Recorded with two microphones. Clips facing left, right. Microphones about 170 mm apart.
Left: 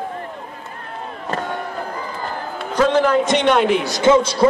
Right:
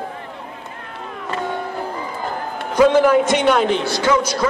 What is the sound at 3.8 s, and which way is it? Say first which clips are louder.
Speech: left 3 dB; 20° left (ahead or behind).